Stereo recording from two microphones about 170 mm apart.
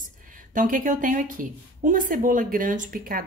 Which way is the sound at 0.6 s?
50° right (ahead or behind).